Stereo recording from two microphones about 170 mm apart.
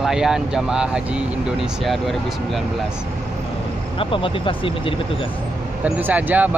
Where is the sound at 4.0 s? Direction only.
30° left (ahead or behind).